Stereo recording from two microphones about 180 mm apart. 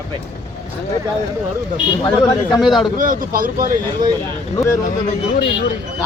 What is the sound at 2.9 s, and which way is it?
Speech, 50° right (ahead or behind).